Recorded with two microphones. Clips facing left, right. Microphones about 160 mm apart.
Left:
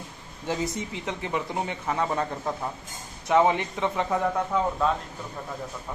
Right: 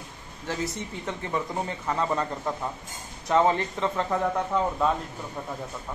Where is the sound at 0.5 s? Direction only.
15° left (ahead or behind).